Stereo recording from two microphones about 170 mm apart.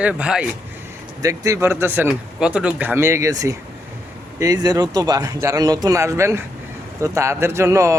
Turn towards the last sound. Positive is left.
turn(degrees=-15)  # may be behind; listen again after turning